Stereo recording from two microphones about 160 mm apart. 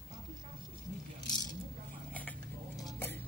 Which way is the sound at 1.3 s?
25° left (ahead or behind).